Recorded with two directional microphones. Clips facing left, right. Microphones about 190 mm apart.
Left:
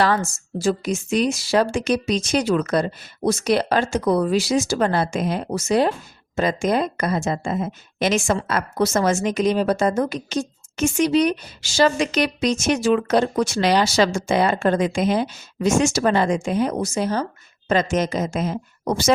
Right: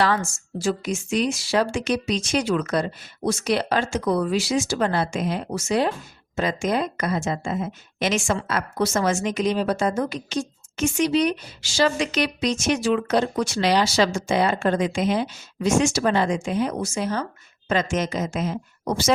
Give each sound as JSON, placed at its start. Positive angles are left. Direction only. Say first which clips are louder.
{"t": 0.0, "sound": "a woman's voice", "louder": "left 2 dB", "side_deg": 40}